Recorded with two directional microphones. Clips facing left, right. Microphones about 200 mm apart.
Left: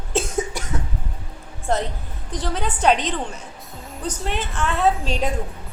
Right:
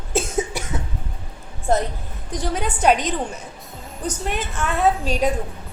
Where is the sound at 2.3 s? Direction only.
10° right (ahead or behind).